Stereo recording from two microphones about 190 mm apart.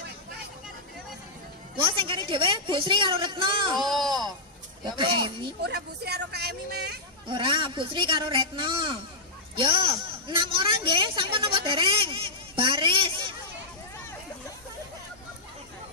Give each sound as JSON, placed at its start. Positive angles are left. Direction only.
{"t": 1.8, "sound": "a man's voice", "side_deg": -25}
{"t": 3.7, "sound": "speech", "side_deg": 0}
{"t": 4.8, "sound": "a man's voice", "side_deg": -25}
{"t": 5.6, "sound": "speech", "side_deg": -60}
{"t": 7.2, "sound": "a man's voice", "side_deg": -25}